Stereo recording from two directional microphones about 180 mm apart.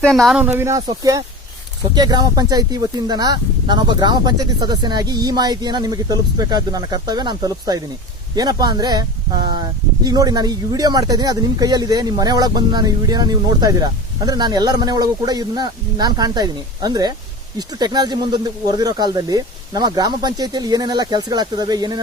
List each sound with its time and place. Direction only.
0.0 s speech: centre (ahead or behind); by 22.0 s 20° right (ahead or behind)